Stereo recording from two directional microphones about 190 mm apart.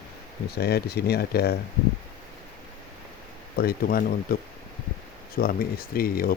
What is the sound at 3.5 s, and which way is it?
Speech, 50° left (ahead or behind).